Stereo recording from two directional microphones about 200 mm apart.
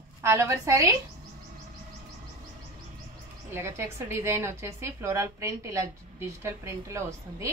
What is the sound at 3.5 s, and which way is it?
A woman's voice, 10° right (ahead or behind).